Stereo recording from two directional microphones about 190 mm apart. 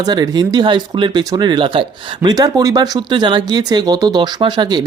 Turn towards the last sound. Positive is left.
turn(degrees=-25)  # may be behind; listen again after turning